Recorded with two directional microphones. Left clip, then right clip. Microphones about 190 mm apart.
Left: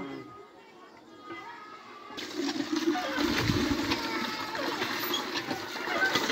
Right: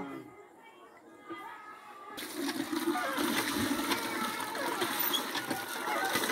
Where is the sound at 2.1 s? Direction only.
5° right (ahead or behind).